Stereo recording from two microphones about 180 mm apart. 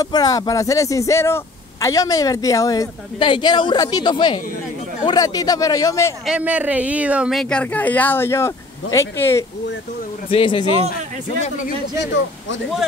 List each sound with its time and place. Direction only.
0.0 s a man's voice: 20° left (ahead or behind)
6.2 s speech: 5° right (ahead or behind); by 9.5 s 15° left (ahead or behind)
10.3 s a man's voice: 30° left (ahead or behind)
12.0 s speech: 90° left